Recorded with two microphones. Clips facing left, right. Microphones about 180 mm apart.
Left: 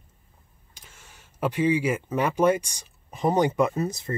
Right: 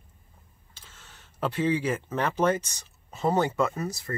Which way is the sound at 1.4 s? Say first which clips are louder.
Left 3 dB; 10° left (ahead or behind).